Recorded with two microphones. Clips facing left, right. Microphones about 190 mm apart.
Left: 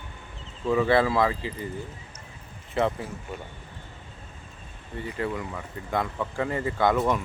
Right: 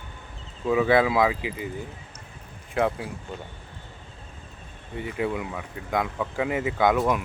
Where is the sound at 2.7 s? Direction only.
Centre (ahead or behind).